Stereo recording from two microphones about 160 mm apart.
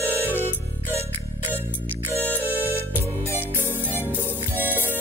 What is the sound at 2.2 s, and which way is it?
Music, 10° left (ahead or behind).